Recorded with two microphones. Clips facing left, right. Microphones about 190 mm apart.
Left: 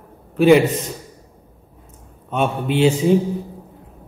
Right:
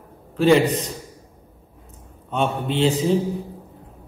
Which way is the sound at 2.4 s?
15° left (ahead or behind).